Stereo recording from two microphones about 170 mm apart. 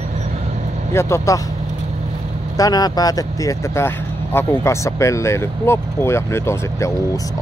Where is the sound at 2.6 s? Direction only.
20° left (ahead or behind).